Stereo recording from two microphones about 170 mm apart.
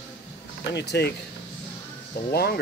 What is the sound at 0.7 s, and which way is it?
Speech, 85° left.